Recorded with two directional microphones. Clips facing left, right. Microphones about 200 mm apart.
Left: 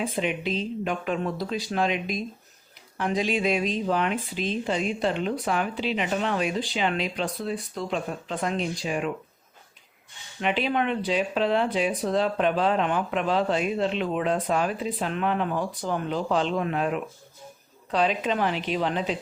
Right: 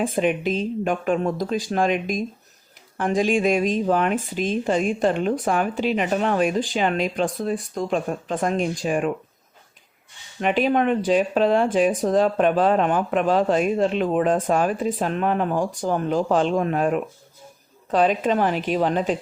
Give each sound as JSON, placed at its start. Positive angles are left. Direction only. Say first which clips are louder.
{"t": 0.0, "sound": "speech", "louder": "right 6 dB", "side_deg": -50}
{"t": 10.4, "sound": "speech", "louder": "right 6 dB", "side_deg": -45}